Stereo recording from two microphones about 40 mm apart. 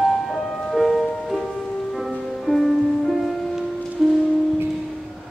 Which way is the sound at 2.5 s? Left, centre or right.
Left.